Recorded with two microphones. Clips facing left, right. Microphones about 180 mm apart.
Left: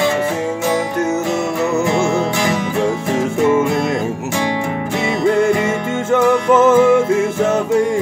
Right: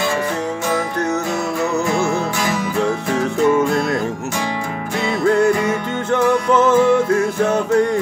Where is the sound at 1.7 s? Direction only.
25° left (ahead or behind).